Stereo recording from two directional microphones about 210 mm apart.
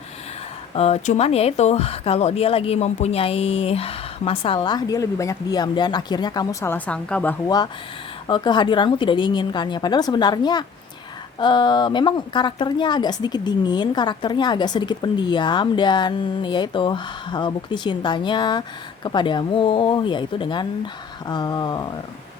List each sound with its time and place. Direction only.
0.7 s a woman's voice: 30° left (ahead or behind)